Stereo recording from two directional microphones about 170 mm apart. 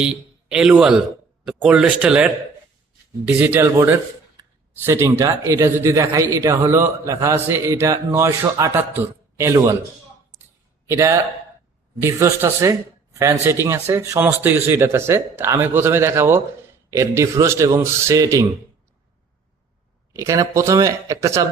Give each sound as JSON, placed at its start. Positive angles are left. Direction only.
{"t": 0.0, "sound": "a man's voice", "side_deg": -5}
{"t": 10.8, "sound": "a man's voice", "side_deg": -15}
{"t": 20.1, "sound": "speech", "side_deg": -20}